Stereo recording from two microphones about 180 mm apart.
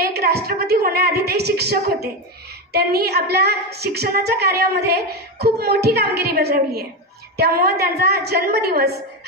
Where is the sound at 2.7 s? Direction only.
60° right (ahead or behind).